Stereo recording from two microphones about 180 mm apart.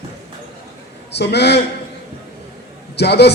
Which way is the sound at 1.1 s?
65° left (ahead or behind).